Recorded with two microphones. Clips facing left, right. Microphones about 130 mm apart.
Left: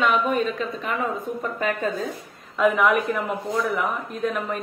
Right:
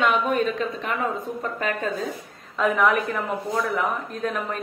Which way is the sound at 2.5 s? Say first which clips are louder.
Left 1 dB; 5° left (ahead or behind).